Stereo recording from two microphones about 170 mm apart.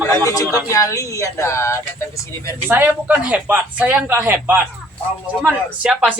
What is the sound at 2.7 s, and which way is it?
A man's voice, 10° right (ahead or behind).